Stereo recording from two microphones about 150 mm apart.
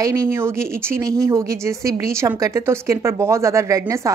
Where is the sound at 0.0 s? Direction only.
20° right (ahead or behind).